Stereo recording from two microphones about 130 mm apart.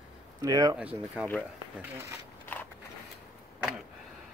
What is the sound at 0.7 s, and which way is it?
Speech, 10° right (ahead or behind).